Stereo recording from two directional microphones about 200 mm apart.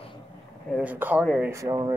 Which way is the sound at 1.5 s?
15° right (ahead or behind).